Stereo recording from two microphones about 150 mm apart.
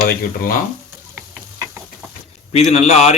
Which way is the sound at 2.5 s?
45° left (ahead or behind).